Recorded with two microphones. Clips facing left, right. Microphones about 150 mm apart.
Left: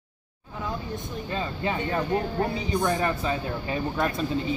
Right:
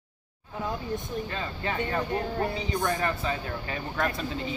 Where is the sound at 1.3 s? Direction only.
20° left (ahead or behind).